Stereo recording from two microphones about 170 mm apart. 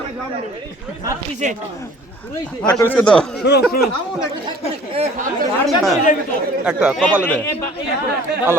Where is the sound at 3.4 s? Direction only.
80° left.